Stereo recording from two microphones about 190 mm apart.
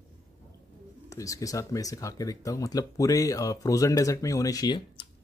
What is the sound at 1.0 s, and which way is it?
Speech, 15° left (ahead or behind).